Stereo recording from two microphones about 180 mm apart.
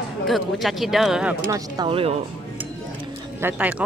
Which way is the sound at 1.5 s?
25° right (ahead or behind).